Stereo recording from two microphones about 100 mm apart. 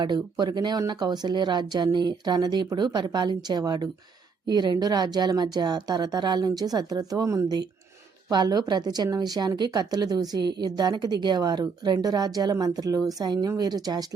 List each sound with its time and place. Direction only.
0.0 s a woman's voice: 45° right (ahead or behind)